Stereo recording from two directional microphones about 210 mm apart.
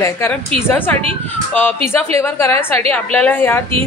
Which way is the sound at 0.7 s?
10° left (ahead or behind).